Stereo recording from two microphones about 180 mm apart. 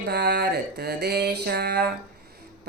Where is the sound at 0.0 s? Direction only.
60° right (ahead or behind).